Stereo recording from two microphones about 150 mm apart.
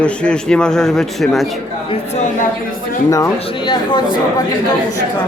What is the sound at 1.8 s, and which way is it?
Speech, 40° left (ahead or behind).